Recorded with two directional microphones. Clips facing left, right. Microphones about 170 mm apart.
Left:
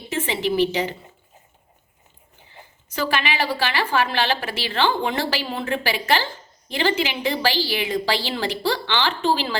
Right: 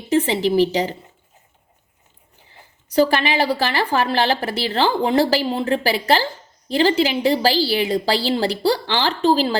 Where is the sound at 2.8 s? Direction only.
35° right (ahead or behind).